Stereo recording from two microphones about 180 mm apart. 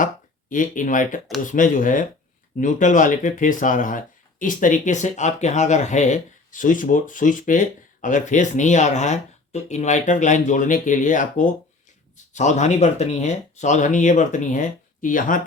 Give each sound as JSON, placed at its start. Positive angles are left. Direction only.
{"t": 0.5, "sound": "speech", "side_deg": 45}